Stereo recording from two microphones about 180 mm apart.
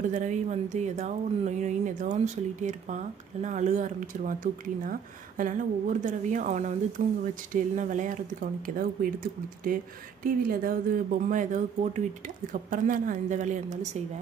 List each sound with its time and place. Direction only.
0.1 s speech: 40° right (ahead or behind)